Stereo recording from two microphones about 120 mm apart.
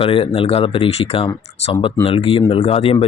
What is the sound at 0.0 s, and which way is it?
Speech, 50° left (ahead or behind).